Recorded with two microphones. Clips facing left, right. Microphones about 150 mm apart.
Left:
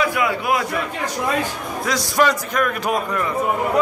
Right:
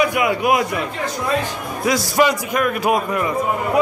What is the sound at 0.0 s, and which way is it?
Speech, 20° right (ahead or behind).